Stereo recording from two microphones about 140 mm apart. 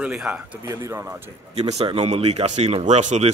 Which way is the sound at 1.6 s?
50° right (ahead or behind).